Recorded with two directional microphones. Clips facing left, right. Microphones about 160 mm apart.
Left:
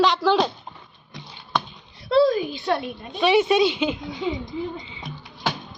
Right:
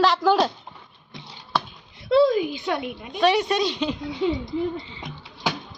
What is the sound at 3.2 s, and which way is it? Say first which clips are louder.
Speech: left 3 dB; centre (ahead or behind).